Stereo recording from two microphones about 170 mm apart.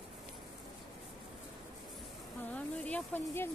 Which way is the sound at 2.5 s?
10° left (ahead or behind).